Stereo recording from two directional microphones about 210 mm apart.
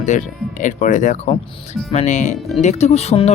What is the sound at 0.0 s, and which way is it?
Speech, 35° left (ahead or behind).